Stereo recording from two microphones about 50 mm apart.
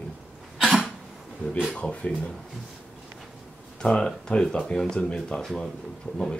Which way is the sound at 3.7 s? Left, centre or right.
Centre.